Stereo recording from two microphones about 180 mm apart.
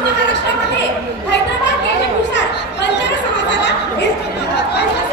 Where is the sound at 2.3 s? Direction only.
75° left (ahead or behind).